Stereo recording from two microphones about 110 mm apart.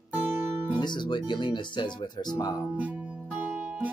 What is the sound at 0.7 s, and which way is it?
Speech, 45° left (ahead or behind).